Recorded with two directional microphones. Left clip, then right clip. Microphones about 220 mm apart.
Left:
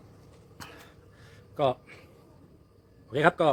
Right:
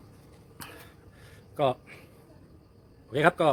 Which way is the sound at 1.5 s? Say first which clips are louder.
Even; centre (ahead or behind).